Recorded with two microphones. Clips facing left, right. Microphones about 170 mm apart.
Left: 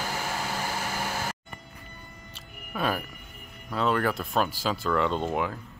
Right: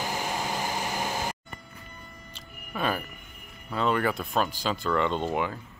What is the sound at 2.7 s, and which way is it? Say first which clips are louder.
Speech: even; centre (ahead or behind).